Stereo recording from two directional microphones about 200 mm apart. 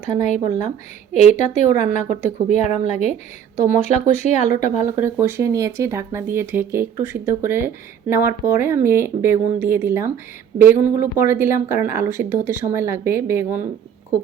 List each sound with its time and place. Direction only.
0.0 s speech: 35° left (ahead or behind)
4.8 s speech: 10° right (ahead or behind)